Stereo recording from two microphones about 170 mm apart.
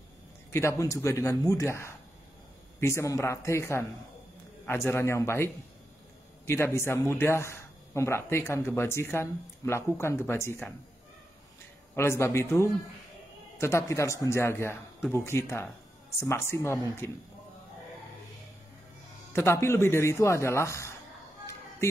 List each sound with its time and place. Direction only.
0.5 s speech: 15° left (ahead or behind)
11.9 s speech: 15° left (ahead or behind)
19.3 s speech: 15° left (ahead or behind)